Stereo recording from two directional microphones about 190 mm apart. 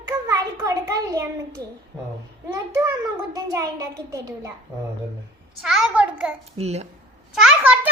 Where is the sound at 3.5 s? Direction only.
15° right (ahead or behind).